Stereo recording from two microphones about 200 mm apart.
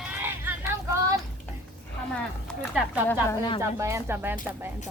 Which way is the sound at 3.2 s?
20° left (ahead or behind).